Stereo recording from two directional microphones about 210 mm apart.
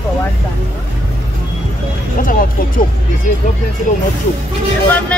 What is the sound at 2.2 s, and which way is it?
Speech, 40° left (ahead or behind).